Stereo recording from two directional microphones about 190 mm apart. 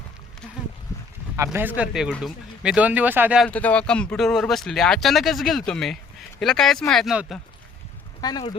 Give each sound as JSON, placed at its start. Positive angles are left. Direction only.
{"t": 0.4, "sound": "a sound", "side_deg": 5}
{"t": 1.4, "sound": "speech", "side_deg": -10}
{"t": 3.4, "sound": "speech", "side_deg": 5}
{"t": 8.2, "sound": "speech", "side_deg": 20}